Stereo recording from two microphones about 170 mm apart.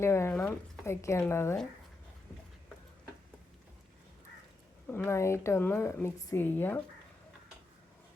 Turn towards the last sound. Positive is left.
turn(degrees=10)  # may be behind; listen again after turning